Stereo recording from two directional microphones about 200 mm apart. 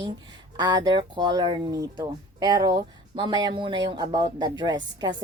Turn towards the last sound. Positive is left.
turn(degrees=-20)  # may be behind; listen again after turning